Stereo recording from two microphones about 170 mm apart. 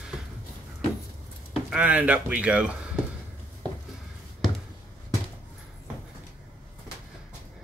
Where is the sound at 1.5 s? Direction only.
5° right (ahead or behind).